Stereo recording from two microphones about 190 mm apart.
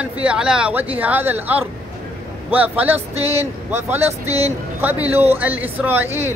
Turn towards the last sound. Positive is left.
turn(degrees=-10)  # may be behind; listen again after turning